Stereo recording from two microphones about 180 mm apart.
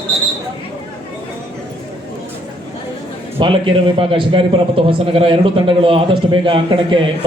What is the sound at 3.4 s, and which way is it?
A man's voice, 30° right (ahead or behind).